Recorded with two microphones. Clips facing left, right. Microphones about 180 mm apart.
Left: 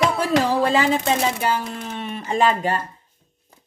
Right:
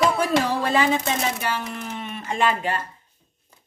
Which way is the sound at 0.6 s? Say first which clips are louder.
Left 2 dB; 30° left (ahead or behind).